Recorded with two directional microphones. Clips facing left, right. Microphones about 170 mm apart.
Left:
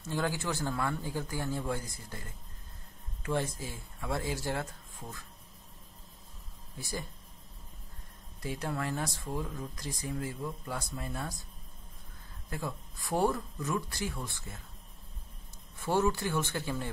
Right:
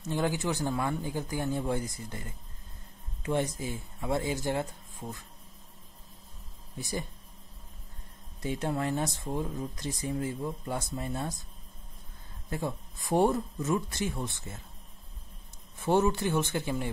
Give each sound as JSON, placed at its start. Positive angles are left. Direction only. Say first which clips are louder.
{"t": 0.0, "sound": "speech", "louder": "right 3 dB", "side_deg": -20}
{"t": 6.8, "sound": "speech", "louder": "right 4 dB", "side_deg": -20}
{"t": 8.4, "sound": "speech", "louder": "right 4 dB", "side_deg": -20}
{"t": 12.4, "sound": "speech", "louder": "right 4 dB", "side_deg": -20}
{"t": 15.8, "sound": "speech", "louder": "right 3 dB", "side_deg": -20}